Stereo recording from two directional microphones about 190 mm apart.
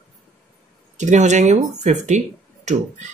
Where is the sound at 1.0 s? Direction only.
40° right (ahead or behind).